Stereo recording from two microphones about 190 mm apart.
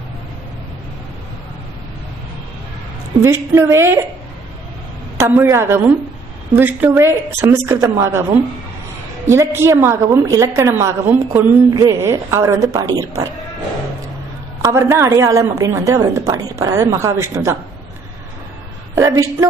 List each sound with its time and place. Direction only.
3.2 s a woman's voice: 15° right (ahead or behind)
5.1 s a woman's voice: 15° right (ahead or behind)
14.6 s a woman's voice: 15° right (ahead or behind)
18.9 s a woman's voice: 15° right (ahead or behind)